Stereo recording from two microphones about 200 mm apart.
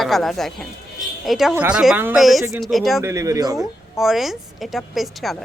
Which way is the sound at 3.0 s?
15° right (ahead or behind).